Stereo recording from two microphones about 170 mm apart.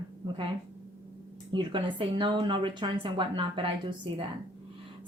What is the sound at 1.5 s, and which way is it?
Speech, 30° right (ahead or behind).